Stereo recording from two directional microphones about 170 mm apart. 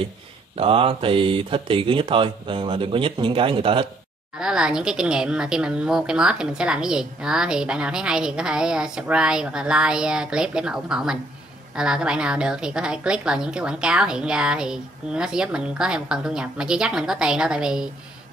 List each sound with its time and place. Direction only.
0.6 s speech: 35° right (ahead or behind)
4.4 s a woman's voice: 5° right (ahead or behind)